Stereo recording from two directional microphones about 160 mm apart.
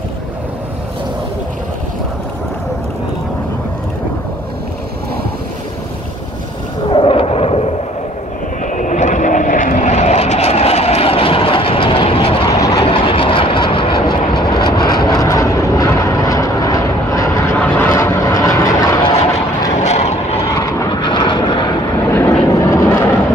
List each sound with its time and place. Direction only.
6.9 s a sound: 35° left (ahead or behind)
8.6 s vehicle: 50° left (ahead or behind); by 12.4 s 35° left (ahead or behind)
12.4 s vehicle: 25° left (ahead or behind)
12.8 s vehicle: 35° left (ahead or behind)
19.7 s vehicle: 45° left (ahead or behind)
20.4 s vehicle: 25° left (ahead or behind)
22.1 s vehicle: 15° left (ahead or behind)